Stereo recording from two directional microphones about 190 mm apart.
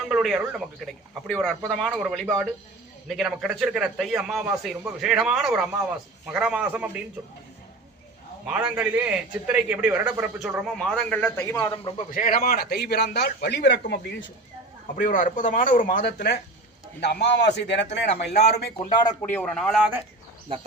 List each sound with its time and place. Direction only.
0.1 s a man's voice: centre (ahead or behind)
8.4 s a man's voice: 5° right (ahead or behind)
11.4 s a man's voice: 20° left (ahead or behind)
12.1 s a man's voice: 50° left (ahead or behind)
14.9 s speech: 45° left (ahead or behind)
16.0 s a man's voice: 60° left (ahead or behind)
18.5 s a man's voice: 25° left (ahead or behind)
19.2 s a man's voice: 5° left (ahead or behind)